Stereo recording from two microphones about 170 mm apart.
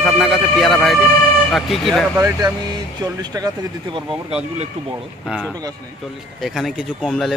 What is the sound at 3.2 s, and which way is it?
Speech, 25° right (ahead or behind).